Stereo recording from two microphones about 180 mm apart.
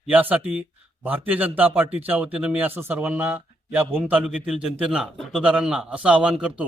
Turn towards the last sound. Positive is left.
turn(degrees=-5)  # may be behind; listen again after turning